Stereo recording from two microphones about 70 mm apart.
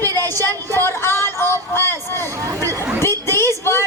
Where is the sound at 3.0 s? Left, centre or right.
Left.